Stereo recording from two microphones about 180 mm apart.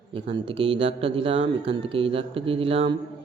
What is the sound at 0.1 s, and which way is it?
Speech, 30° right (ahead or behind).